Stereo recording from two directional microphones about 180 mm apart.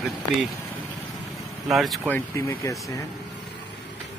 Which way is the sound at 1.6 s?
Centre (ahead or behind).